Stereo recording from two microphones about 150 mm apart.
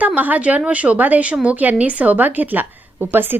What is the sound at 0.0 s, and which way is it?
Speech, 10° right (ahead or behind).